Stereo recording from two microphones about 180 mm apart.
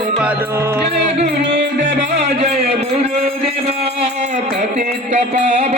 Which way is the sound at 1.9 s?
40° right (ahead or behind).